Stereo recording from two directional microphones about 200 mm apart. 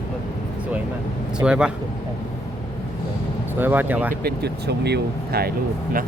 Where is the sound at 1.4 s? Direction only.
5° right (ahead or behind).